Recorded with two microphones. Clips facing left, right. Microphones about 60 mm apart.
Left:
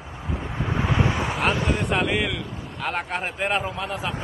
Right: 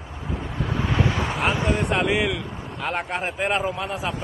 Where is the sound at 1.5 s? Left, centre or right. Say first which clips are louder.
Right 1 dB; right.